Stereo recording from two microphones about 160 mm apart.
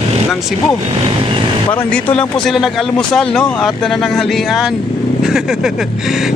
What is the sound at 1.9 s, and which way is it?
Speech, 5° left (ahead or behind).